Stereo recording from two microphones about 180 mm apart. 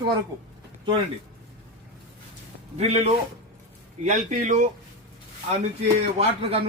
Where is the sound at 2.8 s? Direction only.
35° right (ahead or behind).